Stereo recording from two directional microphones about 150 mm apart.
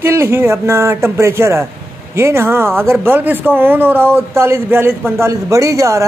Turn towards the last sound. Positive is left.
turn(degrees=-20)  # may be behind; listen again after turning